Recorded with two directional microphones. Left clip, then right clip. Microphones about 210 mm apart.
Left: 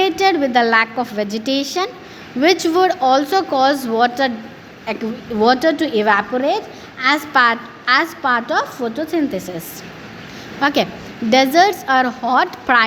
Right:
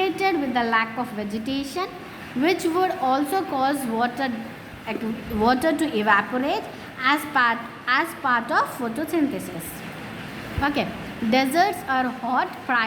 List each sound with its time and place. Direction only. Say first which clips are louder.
0.0 s a woman's voice: left 8 dB; 25° left (ahead or behind)
10.6 s a woman's voice: left 8 dB; 25° left (ahead or behind)